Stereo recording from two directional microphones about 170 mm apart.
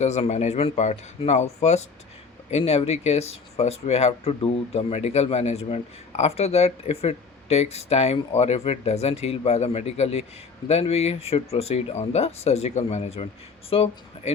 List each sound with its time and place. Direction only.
0.0 s speech: 40° left (ahead or behind)